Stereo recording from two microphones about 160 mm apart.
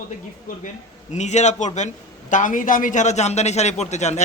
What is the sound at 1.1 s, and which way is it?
A man's voice, 45° left (ahead or behind).